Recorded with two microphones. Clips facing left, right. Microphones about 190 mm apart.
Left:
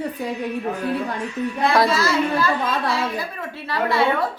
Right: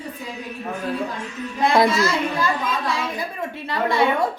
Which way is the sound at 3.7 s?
15° right (ahead or behind).